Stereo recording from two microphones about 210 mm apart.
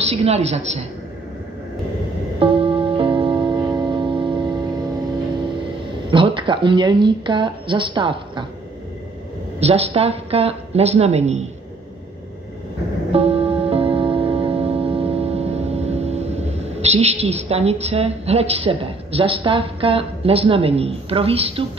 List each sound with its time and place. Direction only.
0.1 s speech: 30° right (ahead or behind)
2.4 s music: 25° right (ahead or behind)
6.0 s a woman's voice: 25° right (ahead or behind)
9.6 s a woman's voice: 30° right (ahead or behind)
13.1 s music: 30° right (ahead or behind)